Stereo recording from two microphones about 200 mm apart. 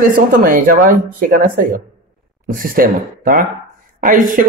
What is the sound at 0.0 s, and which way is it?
A man's voice, 45° right (ahead or behind).